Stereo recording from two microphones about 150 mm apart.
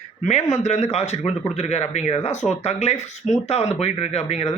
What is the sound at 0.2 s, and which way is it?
Speech, 50° left (ahead or behind).